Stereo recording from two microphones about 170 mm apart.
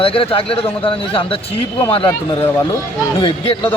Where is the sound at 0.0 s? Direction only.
35° left (ahead or behind).